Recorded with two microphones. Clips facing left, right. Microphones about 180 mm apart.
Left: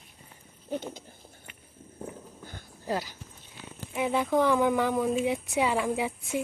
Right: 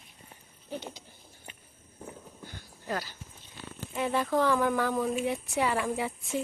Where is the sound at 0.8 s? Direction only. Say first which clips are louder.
Left 4 dB; 50° left (ahead or behind).